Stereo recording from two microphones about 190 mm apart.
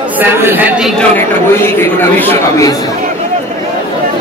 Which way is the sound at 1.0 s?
10° left (ahead or behind).